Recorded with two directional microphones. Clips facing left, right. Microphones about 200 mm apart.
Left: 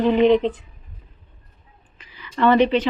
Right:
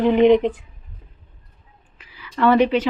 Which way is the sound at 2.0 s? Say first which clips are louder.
Even; 5° right (ahead or behind).